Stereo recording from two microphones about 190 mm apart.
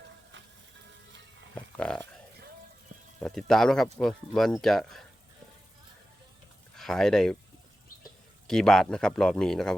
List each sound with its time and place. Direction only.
1.5 s a sound: 5° left (ahead or behind)
3.2 s speech: centre (ahead or behind)
6.7 s speech: centre (ahead or behind)
8.4 s speech: 5° left (ahead or behind)